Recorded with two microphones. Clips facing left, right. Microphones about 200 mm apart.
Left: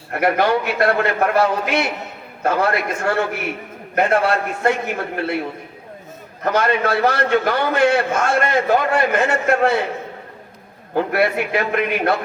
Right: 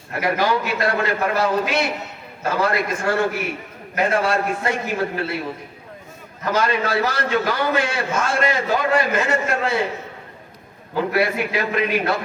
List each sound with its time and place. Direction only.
0.1 s a man's voice: 60° left (ahead or behind)
6.4 s a man's voice: 60° left (ahead or behind)
10.9 s a man's voice: 55° left (ahead or behind)